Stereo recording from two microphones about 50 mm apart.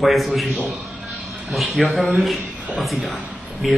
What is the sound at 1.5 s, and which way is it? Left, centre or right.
A man's voice, centre.